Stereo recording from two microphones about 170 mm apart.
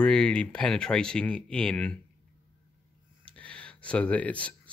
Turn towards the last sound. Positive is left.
turn(degrees=10)  # may be behind; listen again after turning